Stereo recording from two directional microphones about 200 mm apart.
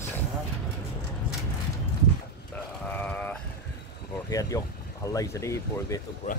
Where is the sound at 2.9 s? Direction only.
5° left (ahead or behind).